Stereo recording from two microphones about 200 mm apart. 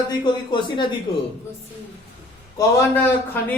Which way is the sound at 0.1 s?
20° left (ahead or behind).